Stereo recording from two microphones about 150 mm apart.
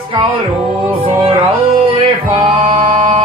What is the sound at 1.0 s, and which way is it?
Music, 40° right (ahead or behind).